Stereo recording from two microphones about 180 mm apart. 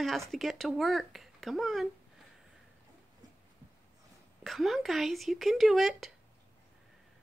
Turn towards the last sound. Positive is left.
turn(degrees=0)  # may be behind; listen again after turning